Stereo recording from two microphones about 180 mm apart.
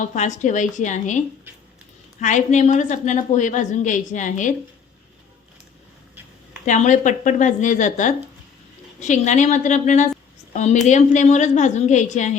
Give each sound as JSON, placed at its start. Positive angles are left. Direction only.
{"t": 0.0, "sound": "a woman's voice", "side_deg": 45}
{"t": 2.2, "sound": "a woman's voice", "side_deg": 40}
{"t": 6.7, "sound": "a woman's voice", "side_deg": 45}